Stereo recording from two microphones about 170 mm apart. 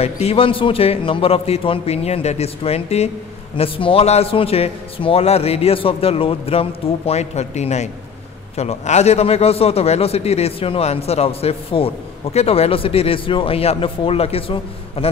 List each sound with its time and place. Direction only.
0.0 s a man's voice: 35° left (ahead or behind)